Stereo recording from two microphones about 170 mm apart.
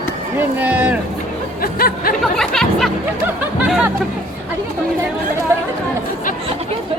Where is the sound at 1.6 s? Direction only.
60° left (ahead or behind).